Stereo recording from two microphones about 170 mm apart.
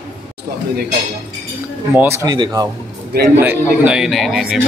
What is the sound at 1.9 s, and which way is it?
Speech, 15° right (ahead or behind).